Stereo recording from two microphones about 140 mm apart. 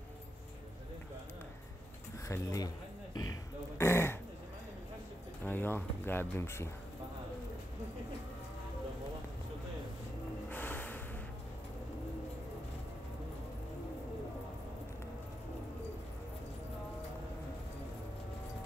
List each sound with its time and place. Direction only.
2.2 s speech: 20° left (ahead or behind)
3.7 s throat clearing: 15° left (ahead or behind)
5.4 s speech: 15° left (ahead or behind)
10.5 s snort: 15° left (ahead or behind)